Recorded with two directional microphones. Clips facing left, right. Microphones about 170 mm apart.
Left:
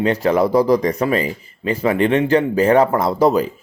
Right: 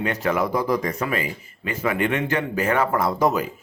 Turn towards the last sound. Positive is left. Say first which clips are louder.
# left 5 dB
turn(degrees=35)  # may be behind; listen again after turning